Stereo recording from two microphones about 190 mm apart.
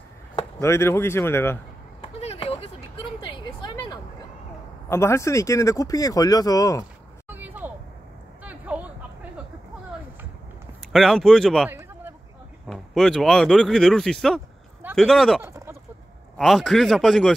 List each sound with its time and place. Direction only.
0.4 s speech: 15° left (ahead or behind)
2.1 s a sound: 30° left (ahead or behind)
4.8 s speech: 15° left (ahead or behind)
7.2 s a sound: 10° right (ahead or behind)
10.9 s speech: centre (ahead or behind)
15.4 s chicken: 15° right (ahead or behind)
16.3 s speech: centre (ahead or behind)